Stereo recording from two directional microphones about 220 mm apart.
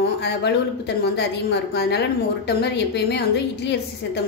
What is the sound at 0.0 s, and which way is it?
A woman's voice, 50° left (ahead or behind).